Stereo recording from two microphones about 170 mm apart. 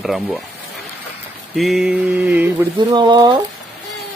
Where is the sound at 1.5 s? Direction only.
Centre (ahead or behind).